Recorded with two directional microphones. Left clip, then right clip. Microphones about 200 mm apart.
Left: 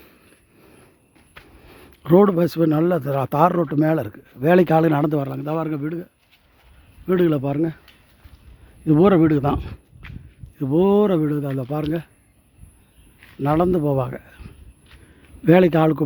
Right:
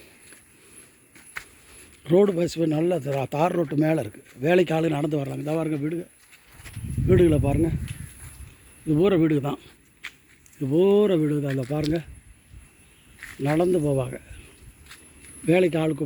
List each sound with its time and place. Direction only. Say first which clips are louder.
1.8 s speech: left 4 dB; 25° left (ahead or behind); by 6.1 s centre (ahead or behind)
7.1 s speech: even; 5° left (ahead or behind)
8.9 s speech: left 5 dB; 30° left (ahead or behind); by 11.9 s 10° left (ahead or behind)
13.4 s speech: left 3 dB; 20° left (ahead or behind)
15.4 s speech: left 6 dB; 25° left (ahead or behind)